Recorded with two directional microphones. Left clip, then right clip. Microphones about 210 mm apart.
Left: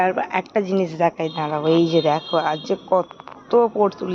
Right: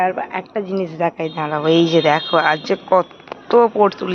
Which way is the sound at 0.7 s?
10° left (ahead or behind).